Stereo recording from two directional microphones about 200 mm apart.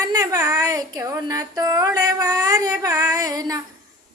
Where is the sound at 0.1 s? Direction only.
15° right (ahead or behind).